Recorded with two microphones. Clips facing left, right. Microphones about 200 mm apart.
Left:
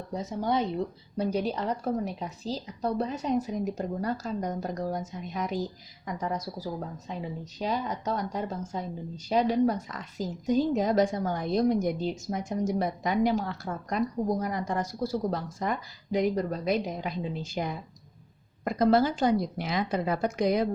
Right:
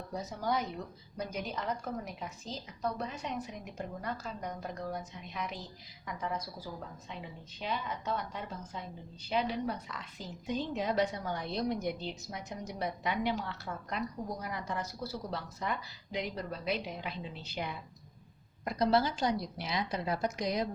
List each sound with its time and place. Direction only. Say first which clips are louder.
0.1 s a woman's voice: left 6 dB; 25° left (ahead or behind); by 20.7 s 55° left (ahead or behind)